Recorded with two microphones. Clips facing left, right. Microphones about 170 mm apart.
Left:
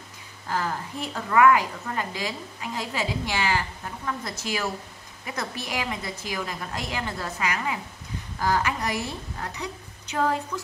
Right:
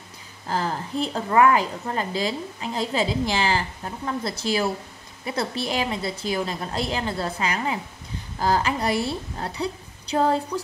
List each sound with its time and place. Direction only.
0.5 s a woman's voice: 30° right (ahead or behind)